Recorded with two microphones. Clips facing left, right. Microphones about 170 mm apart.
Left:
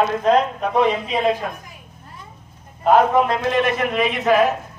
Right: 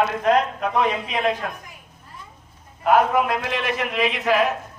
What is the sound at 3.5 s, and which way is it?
Speech, 50° left (ahead or behind).